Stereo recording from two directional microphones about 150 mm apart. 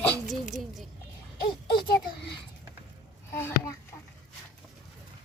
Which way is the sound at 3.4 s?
15° left (ahead or behind).